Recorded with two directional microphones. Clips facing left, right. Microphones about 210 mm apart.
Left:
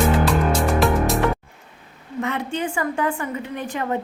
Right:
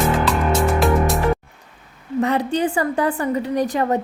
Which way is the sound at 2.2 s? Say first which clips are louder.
Right 6 dB; 35° right (ahead or behind).